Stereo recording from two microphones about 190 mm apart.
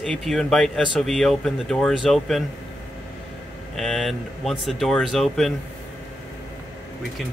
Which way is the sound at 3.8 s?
Centre (ahead or behind).